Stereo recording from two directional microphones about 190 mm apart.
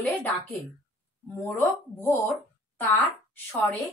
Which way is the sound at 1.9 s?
10° left (ahead or behind).